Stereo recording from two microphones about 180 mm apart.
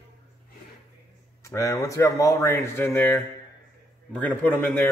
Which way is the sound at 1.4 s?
15° left (ahead or behind).